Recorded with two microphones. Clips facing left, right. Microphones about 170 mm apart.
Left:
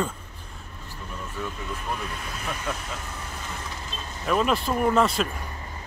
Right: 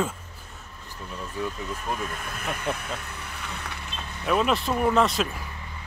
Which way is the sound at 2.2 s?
55° right (ahead or behind).